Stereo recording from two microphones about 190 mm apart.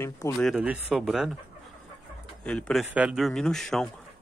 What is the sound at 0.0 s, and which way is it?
Speech, 15° left (ahead or behind).